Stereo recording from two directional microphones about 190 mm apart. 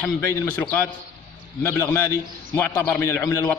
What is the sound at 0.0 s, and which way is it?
A man's voice, 15° left (ahead or behind).